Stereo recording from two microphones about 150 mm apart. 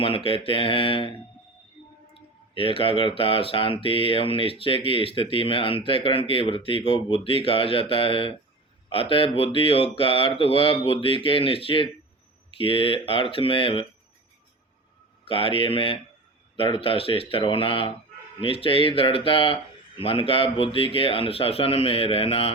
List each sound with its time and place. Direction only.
0.0 s speech: 40° left (ahead or behind)
2.1 s speech: 35° left (ahead or behind)
15.2 s speech: 40° left (ahead or behind)